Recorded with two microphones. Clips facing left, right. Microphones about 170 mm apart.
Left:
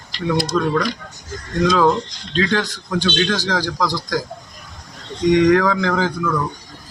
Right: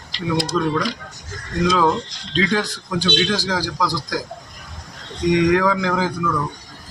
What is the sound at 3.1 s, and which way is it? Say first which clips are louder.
Speech: even; 10° right (ahead or behind).